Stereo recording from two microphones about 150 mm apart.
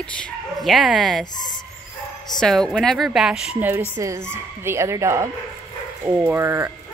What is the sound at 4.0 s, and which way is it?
Speech, 20° right (ahead or behind).